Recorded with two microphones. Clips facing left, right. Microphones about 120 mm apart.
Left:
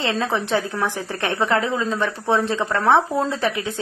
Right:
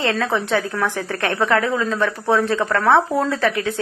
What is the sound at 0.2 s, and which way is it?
A woman's voice, 25° left (ahead or behind).